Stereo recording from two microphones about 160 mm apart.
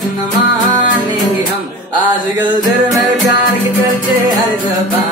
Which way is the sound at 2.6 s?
25° right (ahead or behind).